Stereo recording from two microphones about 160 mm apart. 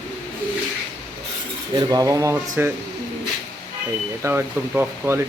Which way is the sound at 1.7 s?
20° right (ahead or behind).